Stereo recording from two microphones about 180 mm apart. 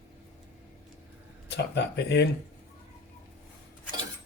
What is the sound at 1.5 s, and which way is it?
Speech, 70° left (ahead or behind).